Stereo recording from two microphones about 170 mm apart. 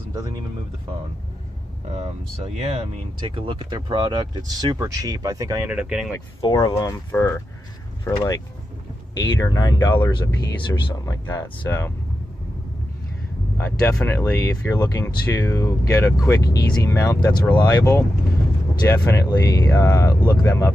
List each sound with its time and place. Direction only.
0.1 s speech: 20° right (ahead or behind)
1.9 s speech: 40° right (ahead or behind); by 5.7 s 20° right (ahead or behind)
5.7 s speech: 5° right (ahead or behind)
6.4 s speech: 25° left (ahead or behind)
7.1 s speech: 15° left (ahead or behind)
13.6 s speech: 15° left (ahead or behind)